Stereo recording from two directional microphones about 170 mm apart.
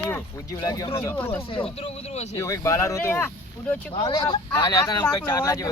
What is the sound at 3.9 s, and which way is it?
Speech, 25° left (ahead or behind).